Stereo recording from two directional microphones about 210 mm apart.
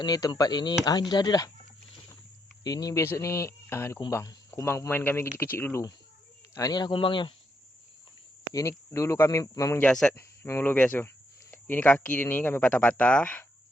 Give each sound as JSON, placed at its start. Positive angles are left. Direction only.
{"t": 0.0, "sound": "speech", "side_deg": 20}
{"t": 2.6, "sound": "speech", "side_deg": 15}
{"t": 8.5, "sound": "speech", "side_deg": 15}
{"t": 9.8, "sound": "speech", "side_deg": 5}